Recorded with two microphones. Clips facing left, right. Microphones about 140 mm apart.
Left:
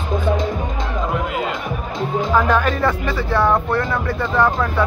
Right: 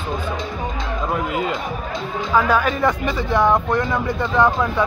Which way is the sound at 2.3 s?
10° right (ahead or behind).